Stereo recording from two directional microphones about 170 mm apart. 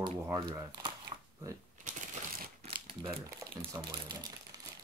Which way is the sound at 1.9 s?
55° right (ahead or behind).